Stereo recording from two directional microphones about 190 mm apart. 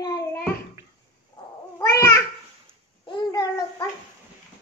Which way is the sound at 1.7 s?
15° left (ahead or behind).